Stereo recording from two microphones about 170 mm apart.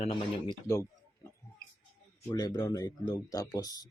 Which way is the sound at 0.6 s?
15° left (ahead or behind).